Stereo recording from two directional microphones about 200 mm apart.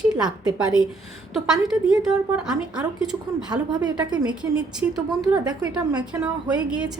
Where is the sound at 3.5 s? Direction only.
20° right (ahead or behind).